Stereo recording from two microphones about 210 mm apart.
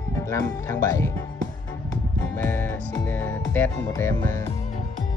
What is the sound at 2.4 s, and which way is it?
Music, 10° left (ahead or behind).